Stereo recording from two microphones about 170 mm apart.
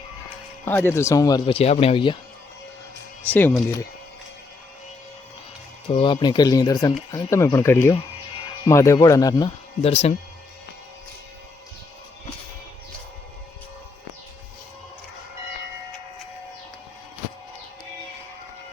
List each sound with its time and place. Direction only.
0.6 s speech: 10° left (ahead or behind)
1.5 s speech: 35° left (ahead or behind)
3.2 s speech: 10° left (ahead or behind)
5.9 s speech: 30° left (ahead or behind)
9.8 s speech: 35° left (ahead or behind)